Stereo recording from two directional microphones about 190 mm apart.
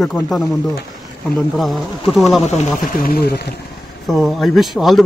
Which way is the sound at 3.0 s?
55° left (ahead or behind).